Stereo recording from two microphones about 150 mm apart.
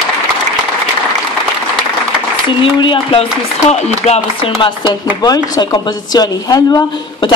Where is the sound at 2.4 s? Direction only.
35° left (ahead or behind).